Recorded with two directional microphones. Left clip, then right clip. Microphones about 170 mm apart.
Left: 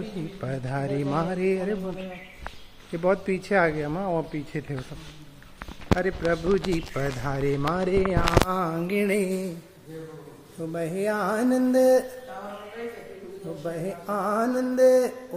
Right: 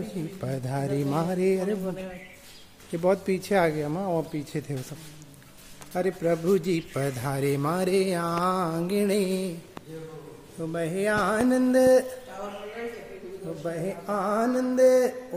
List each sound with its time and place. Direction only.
0.4 s speech: 15° right (ahead or behind)
2.9 s speech: 20° right (ahead or behind)
5.9 s speech: 20° right (ahead or behind); by 9.4 s centre (ahead or behind)
10.6 s music: centre (ahead or behind)
13.7 s music: centre (ahead or behind)